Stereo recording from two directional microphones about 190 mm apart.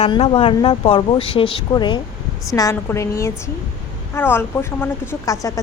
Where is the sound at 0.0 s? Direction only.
30° left (ahead or behind).